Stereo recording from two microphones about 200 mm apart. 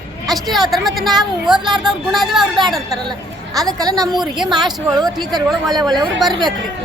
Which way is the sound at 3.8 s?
20° right (ahead or behind).